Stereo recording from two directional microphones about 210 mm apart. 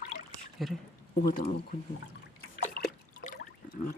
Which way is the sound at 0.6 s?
Centre (ahead or behind).